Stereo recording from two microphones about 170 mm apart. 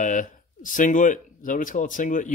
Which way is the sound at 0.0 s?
50° left (ahead or behind).